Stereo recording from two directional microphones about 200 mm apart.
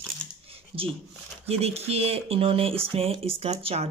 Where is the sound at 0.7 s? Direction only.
30° right (ahead or behind).